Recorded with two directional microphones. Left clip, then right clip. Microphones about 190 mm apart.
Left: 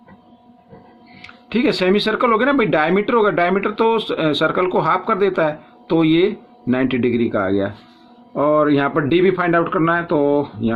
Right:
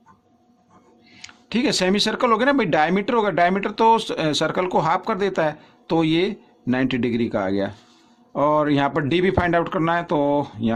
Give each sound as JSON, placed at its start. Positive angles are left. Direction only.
{"t": 1.2, "sound": "speech", "side_deg": -45}